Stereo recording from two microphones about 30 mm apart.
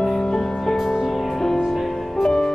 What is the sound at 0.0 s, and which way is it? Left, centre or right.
Music, centre.